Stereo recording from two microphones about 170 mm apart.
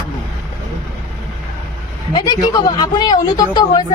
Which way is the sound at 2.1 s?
25° left (ahead or behind).